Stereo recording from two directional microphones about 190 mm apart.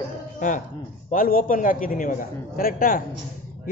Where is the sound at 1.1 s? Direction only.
45° left (ahead or behind).